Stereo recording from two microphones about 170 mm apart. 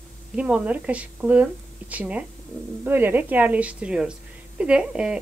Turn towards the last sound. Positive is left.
turn(degrees=-5)  # may be behind; listen again after turning